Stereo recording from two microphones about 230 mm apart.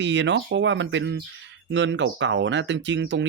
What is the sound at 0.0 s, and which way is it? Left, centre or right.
Speech, right.